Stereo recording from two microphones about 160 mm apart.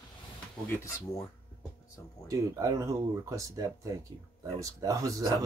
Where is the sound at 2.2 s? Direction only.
20° right (ahead or behind).